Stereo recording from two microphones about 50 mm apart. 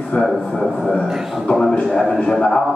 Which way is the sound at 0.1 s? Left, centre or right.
Left.